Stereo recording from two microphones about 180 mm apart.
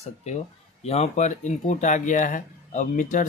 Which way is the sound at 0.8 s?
35° left (ahead or behind).